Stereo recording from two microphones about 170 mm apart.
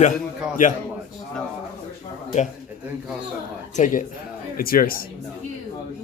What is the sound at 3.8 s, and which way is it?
A man's voice, 50° left (ahead or behind).